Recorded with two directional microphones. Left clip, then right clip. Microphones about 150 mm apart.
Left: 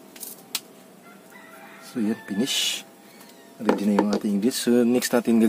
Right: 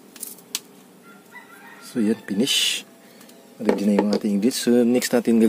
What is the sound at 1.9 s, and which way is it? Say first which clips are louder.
Speech: right 4 dB; 30° right (ahead or behind).